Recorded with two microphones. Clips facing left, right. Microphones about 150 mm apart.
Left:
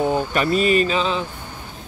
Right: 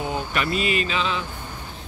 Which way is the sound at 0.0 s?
40° left (ahead or behind).